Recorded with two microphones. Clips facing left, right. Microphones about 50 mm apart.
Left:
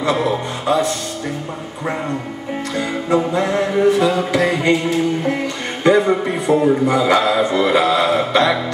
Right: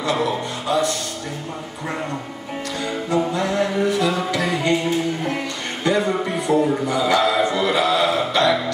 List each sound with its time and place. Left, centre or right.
0.0 s music: left
3.1 s music: left
5.9 s a man's voice: left